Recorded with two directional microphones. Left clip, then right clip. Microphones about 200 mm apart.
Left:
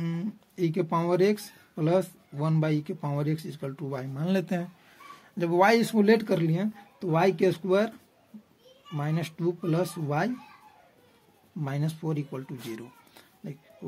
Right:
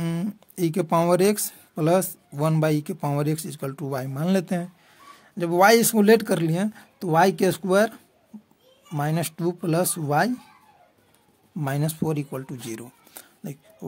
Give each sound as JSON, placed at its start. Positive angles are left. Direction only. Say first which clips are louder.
{"t": 0.0, "sound": "speech", "louder": "right 5 dB", "side_deg": -40}
{"t": 8.9, "sound": "speech", "louder": "right 7 dB", "side_deg": -40}
{"t": 11.6, "sound": "speech", "louder": "right 7 dB", "side_deg": -35}